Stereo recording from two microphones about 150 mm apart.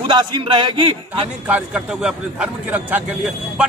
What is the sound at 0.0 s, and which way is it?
Speech, 35° right (ahead or behind).